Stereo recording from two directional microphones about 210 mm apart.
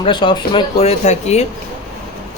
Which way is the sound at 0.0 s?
20° left (ahead or behind).